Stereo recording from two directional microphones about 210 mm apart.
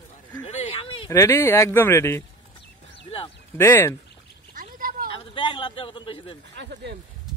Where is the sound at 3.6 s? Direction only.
10° left (ahead or behind).